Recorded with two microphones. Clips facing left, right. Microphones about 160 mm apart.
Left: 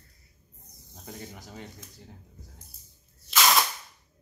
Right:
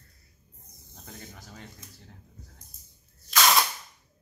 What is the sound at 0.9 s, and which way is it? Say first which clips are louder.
Speech: left 4 dB; 15° left (ahead or behind).